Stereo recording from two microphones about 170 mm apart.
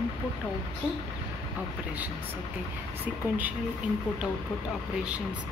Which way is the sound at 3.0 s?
10° right (ahead or behind).